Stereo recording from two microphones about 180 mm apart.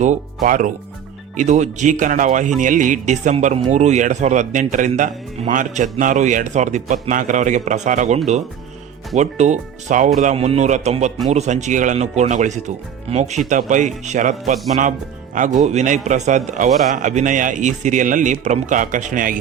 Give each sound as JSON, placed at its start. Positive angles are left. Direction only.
{"t": 0.0, "sound": "speech", "side_deg": -45}